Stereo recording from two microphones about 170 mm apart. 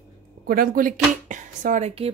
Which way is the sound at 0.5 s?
55° right (ahead or behind).